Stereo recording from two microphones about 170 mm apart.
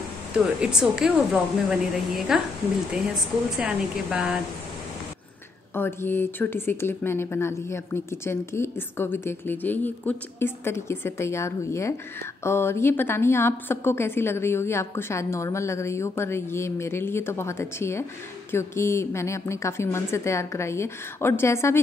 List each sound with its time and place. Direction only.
0.6 s a woman's voice: 5° right (ahead or behind)
3.5 s speech: 5° right (ahead or behind)
5.8 s speech: 15° left (ahead or behind)